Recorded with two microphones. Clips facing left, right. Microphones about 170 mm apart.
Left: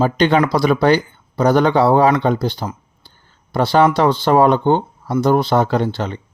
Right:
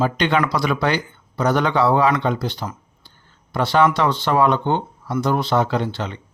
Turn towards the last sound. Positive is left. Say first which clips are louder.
# left 4 dB
turn(degrees=40)  # may be behind; listen again after turning